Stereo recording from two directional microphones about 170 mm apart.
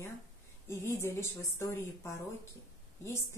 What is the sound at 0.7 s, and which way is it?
Speech, 15° left (ahead or behind).